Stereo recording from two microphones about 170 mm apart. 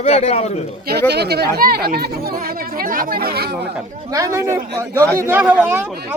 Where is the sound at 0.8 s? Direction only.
70° right (ahead or behind).